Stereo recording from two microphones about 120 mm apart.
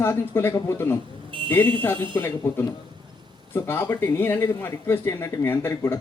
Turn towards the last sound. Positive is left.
turn(degrees=20)  # may be behind; listen again after turning